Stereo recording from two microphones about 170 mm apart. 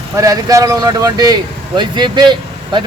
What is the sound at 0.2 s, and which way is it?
Speech, 20° right (ahead or behind).